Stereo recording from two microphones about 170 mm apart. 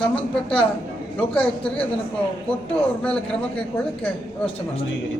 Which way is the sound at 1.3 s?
5° left (ahead or behind).